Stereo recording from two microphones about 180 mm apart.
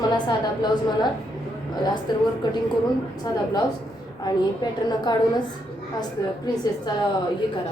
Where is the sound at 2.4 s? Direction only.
25° left (ahead or behind).